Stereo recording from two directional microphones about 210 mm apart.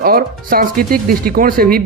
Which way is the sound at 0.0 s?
45° right (ahead or behind).